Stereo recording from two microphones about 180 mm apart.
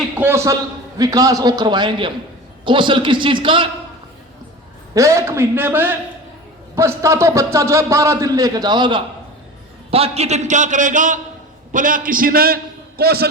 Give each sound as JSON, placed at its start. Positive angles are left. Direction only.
{"t": 0.2, "sound": "a man's voice", "side_deg": -15}
{"t": 4.9, "sound": "a man's voice", "side_deg": -15}